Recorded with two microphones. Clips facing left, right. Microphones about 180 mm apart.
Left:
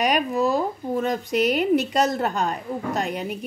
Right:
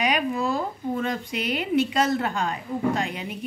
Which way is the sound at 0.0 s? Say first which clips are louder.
Left 3 dB; 40° left (ahead or behind).